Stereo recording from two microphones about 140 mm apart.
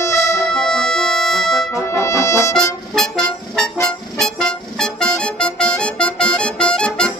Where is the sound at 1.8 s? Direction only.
20° left (ahead or behind).